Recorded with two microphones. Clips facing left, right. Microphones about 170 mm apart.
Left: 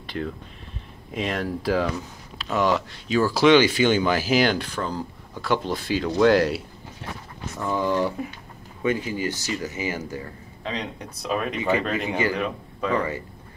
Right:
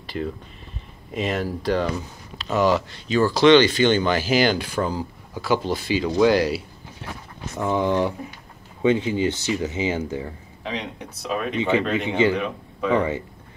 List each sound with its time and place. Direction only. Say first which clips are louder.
0.0 s a sound: right 2 dB; centre (ahead or behind)
1.1 s speech: right 2 dB; centre (ahead or behind)
7.6 s speech: right 2 dB; 20° right (ahead or behind)
10.2 s a man's voice: right 1 dB; 5° right (ahead or behind)